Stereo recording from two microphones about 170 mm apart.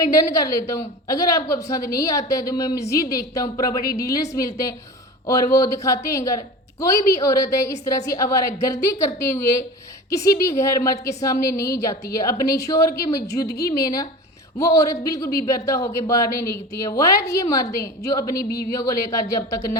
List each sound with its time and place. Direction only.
0.1 s a woman's voice: 20° left (ahead or behind)